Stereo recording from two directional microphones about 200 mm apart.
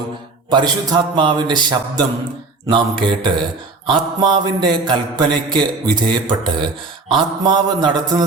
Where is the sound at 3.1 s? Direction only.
25° right (ahead or behind).